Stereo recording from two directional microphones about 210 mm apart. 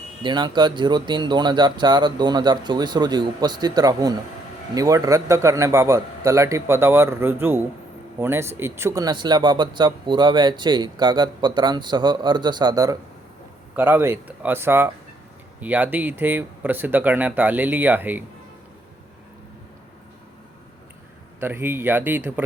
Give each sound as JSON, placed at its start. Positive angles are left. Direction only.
{"t": 0.2, "sound": "a man's voice", "side_deg": -20}
{"t": 21.4, "sound": "a man's voice", "side_deg": -10}